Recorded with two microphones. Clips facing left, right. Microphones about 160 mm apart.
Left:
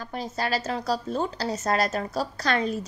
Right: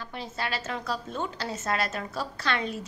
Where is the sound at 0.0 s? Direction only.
40° left (ahead or behind).